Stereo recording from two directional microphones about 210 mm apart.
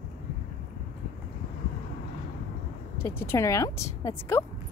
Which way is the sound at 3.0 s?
10° left (ahead or behind).